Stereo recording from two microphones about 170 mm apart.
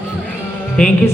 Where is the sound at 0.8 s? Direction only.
5° left (ahead or behind).